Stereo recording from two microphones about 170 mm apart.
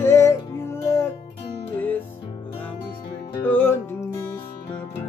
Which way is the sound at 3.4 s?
10° left (ahead or behind).